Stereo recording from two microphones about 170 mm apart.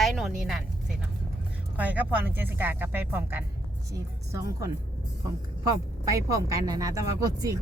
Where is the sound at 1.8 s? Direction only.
10° right (ahead or behind).